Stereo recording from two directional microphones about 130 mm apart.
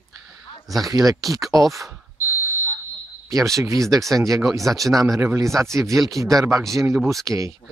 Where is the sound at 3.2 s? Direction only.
25° right (ahead or behind).